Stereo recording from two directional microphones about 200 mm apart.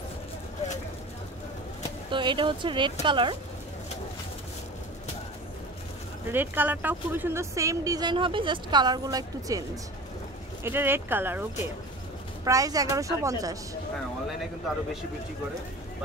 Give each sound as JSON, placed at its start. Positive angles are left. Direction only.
{"t": 2.0, "sound": "speech", "side_deg": -25}
{"t": 6.3, "sound": "speech", "side_deg": -10}
{"t": 12.4, "sound": "speech", "side_deg": -15}